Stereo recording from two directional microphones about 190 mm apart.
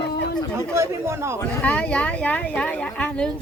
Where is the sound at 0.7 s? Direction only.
15° right (ahead or behind).